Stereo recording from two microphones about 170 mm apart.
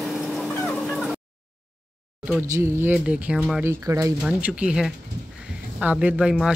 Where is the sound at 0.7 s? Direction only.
Centre (ahead or behind).